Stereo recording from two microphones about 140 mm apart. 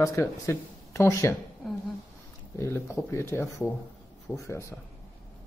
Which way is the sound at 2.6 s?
20° left (ahead or behind).